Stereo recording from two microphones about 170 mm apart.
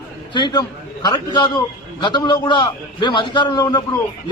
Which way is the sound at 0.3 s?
25° left (ahead or behind).